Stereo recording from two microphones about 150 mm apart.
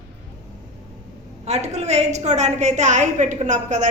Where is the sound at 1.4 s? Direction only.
45° right (ahead or behind).